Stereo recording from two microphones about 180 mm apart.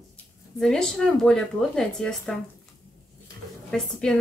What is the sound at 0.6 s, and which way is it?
Speech, 5° left (ahead or behind).